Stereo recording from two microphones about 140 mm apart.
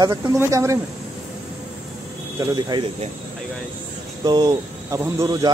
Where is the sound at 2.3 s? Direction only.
25° right (ahead or behind).